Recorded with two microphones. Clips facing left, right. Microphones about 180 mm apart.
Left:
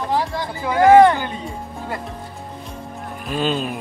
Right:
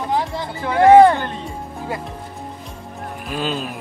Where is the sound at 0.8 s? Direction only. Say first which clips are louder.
Right 1 dB; 30° right (ahead or behind).